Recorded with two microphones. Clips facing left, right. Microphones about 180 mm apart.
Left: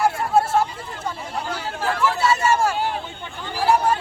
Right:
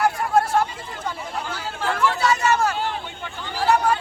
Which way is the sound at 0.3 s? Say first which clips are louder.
Left 1 dB; 5° left (ahead or behind).